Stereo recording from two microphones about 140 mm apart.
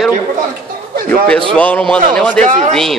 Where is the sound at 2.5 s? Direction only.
55° right (ahead or behind).